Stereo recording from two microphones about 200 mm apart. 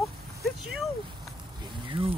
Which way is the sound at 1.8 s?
25° right (ahead or behind).